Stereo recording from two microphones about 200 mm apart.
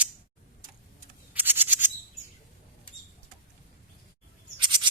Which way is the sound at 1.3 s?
10° right (ahead or behind).